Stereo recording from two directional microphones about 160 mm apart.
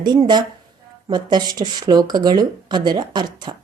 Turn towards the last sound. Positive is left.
turn(degrees=-25)  # may be behind; listen again after turning